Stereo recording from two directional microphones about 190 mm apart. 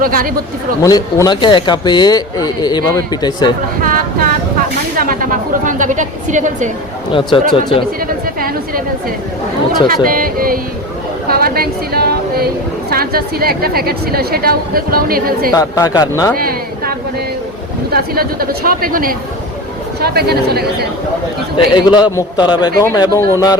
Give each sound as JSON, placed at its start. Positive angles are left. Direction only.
{"t": 0.0, "sound": "a woman's voice", "side_deg": -50}
{"t": 0.8, "sound": "speech", "side_deg": 20}
{"t": 3.8, "sound": "a sound", "side_deg": -50}
{"t": 4.9, "sound": "a woman's voice", "side_deg": -45}
{"t": 7.1, "sound": "speech", "side_deg": 25}
{"t": 8.0, "sound": "chatter", "side_deg": -50}
{"t": 9.8, "sound": "a woman's voice", "side_deg": -50}
{"t": 15.5, "sound": "speech", "side_deg": 15}
{"t": 16.4, "sound": "a woman's voice", "side_deg": -50}
{"t": 17.9, "sound": "a woman's voice", "side_deg": -50}
{"t": 21.7, "sound": "speech", "side_deg": 25}